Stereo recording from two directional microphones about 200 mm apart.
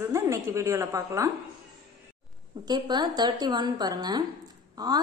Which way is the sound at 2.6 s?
20° right (ahead or behind).